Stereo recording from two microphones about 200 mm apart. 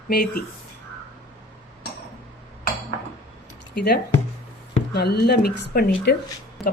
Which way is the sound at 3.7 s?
55° left (ahead or behind).